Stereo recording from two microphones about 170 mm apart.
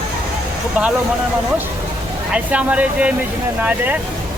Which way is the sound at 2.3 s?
5° right (ahead or behind).